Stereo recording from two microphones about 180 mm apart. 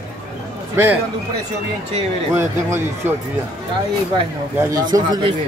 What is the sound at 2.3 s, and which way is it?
Speech, 15° right (ahead or behind).